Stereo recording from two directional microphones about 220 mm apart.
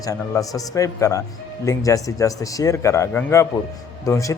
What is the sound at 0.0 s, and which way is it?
Speech, 15° left (ahead or behind).